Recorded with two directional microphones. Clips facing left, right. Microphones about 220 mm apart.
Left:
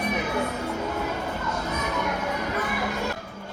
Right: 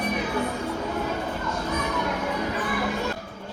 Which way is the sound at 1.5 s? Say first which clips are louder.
Right 1 dB; 10° left (ahead or behind).